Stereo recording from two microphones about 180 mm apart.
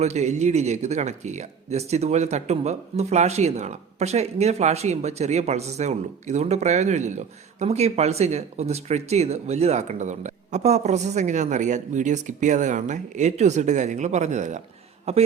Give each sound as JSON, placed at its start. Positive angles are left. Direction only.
{"t": 0.0, "sound": "speech", "side_deg": -40}